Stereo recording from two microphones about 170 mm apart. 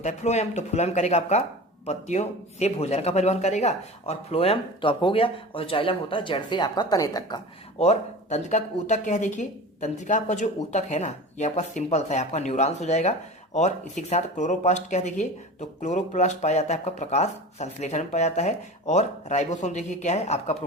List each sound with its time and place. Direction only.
0.0 s speech: 40° left (ahead or behind); by 7.4 s 25° left (ahead or behind)
7.8 s speech: 40° left (ahead or behind)